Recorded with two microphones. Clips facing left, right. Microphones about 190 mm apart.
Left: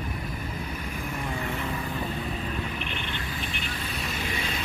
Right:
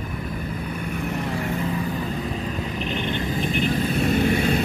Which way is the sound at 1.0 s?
70° right (ahead or behind).